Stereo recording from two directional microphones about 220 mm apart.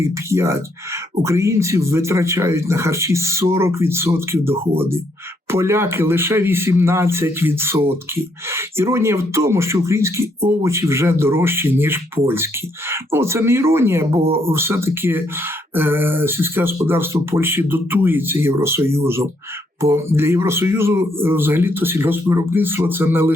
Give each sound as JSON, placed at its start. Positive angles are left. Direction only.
{"t": 0.0, "sound": "speech", "side_deg": -10}